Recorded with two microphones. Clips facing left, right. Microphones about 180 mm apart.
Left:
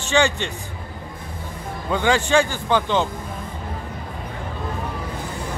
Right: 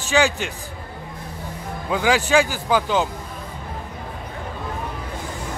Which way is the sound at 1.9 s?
5° right (ahead or behind).